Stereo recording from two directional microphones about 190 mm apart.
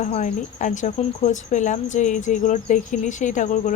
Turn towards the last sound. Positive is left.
turn(degrees=40)  # may be behind; listen again after turning